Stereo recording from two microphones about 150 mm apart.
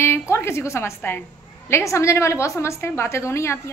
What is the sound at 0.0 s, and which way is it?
A woman's voice, 15° left (ahead or behind).